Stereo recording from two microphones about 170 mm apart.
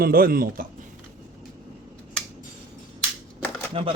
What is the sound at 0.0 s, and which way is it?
Speech, 60° right (ahead or behind).